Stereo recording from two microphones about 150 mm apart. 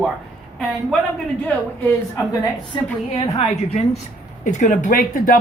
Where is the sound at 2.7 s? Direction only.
35° left (ahead or behind).